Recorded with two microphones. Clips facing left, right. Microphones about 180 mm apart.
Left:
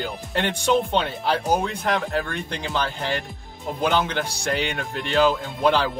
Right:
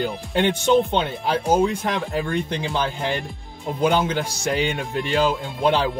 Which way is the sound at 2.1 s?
Centre (ahead or behind).